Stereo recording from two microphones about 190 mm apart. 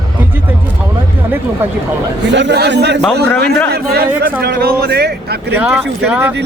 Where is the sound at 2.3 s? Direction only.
65° right (ahead or behind).